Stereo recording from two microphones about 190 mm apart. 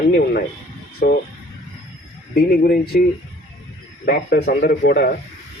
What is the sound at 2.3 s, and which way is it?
Speech, 55° left (ahead or behind).